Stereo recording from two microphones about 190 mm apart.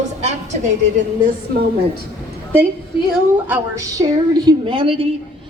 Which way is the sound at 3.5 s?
15° right (ahead or behind).